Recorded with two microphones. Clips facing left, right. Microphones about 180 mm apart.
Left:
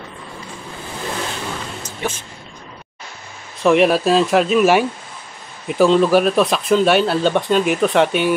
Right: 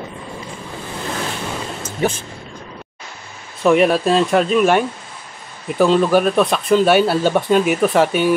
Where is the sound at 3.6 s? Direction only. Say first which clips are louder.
Even; centre (ahead or behind).